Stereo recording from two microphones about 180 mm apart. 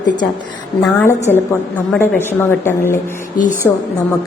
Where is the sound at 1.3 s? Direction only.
10° left (ahead or behind).